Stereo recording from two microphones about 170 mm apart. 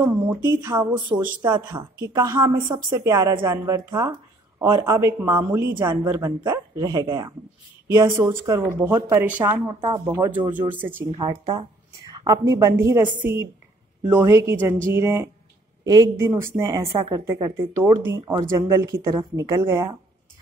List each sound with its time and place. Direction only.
0.0 s speech: 15° right (ahead or behind)
11.2 s speech: 25° right (ahead or behind)